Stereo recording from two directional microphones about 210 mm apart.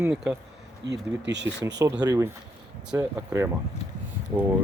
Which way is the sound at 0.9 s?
55° right (ahead or behind).